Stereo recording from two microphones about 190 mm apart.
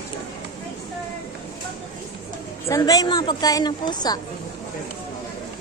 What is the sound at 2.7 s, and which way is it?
A woman's voice, 20° left (ahead or behind).